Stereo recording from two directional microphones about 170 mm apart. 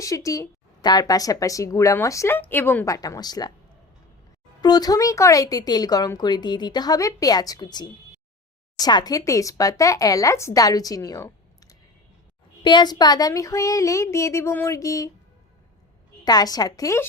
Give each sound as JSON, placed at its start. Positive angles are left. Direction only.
{"t": 0.0, "sound": "speech", "side_deg": 20}
{"t": 4.6, "sound": "speech", "side_deg": 25}
{"t": 16.2, "sound": "speech", "side_deg": 25}